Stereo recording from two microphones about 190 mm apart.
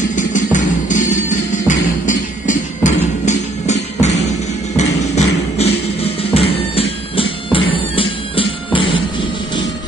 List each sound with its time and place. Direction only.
0.1 s music: 40° left (ahead or behind)
5.1 s beatboxing: 35° left (ahead or behind)
6.3 s music: 30° left (ahead or behind)